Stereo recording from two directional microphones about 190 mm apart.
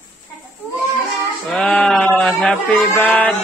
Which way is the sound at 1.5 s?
5° left (ahead or behind).